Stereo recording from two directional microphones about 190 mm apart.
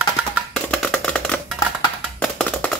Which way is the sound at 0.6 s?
5° left (ahead or behind).